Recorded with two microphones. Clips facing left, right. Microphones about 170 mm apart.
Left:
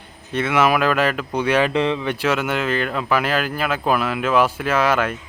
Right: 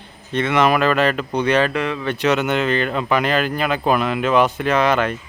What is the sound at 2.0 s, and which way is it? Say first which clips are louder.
Speech: right 2 dB; 10° left (ahead or behind).